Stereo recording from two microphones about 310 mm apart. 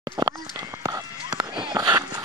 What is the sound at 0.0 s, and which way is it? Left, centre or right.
Run, centre.